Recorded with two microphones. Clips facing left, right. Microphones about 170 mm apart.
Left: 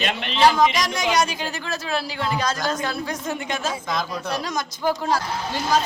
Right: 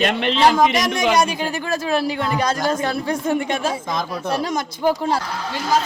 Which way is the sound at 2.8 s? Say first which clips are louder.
Right 5 dB; 30° right (ahead or behind).